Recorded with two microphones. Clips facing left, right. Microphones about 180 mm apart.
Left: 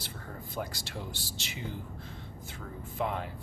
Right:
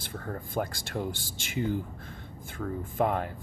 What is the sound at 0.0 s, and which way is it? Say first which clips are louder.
Speech: right 6 dB; 50° right (ahead or behind).